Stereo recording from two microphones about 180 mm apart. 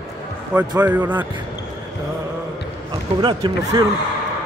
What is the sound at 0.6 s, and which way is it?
Speech, 10° right (ahead or behind).